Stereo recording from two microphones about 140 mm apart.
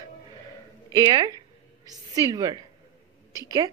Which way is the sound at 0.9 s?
30° right (ahead or behind).